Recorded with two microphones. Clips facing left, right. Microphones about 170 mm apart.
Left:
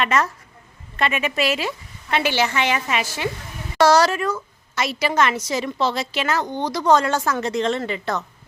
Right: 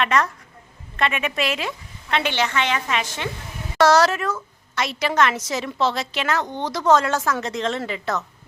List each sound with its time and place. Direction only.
0.0 s a woman's voice: centre (ahead or behind)